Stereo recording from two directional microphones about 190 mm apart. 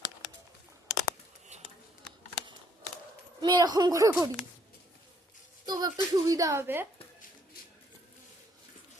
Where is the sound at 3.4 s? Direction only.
20° right (ahead or behind).